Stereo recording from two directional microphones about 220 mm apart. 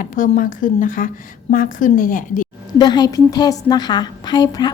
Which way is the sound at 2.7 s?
20° left (ahead or behind).